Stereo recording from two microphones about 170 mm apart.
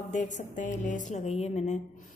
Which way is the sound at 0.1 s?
45° left (ahead or behind).